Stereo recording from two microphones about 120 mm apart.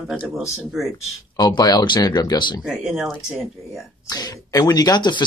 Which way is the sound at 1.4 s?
35° left (ahead or behind).